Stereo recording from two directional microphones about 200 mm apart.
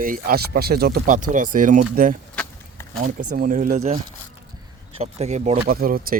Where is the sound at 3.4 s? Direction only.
40° right (ahead or behind).